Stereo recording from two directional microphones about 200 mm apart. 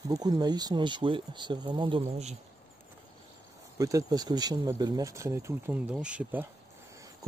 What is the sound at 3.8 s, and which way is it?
Speech, 15° right (ahead or behind).